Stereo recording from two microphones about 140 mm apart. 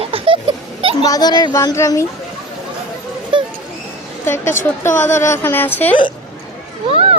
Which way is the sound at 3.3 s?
35° right (ahead or behind).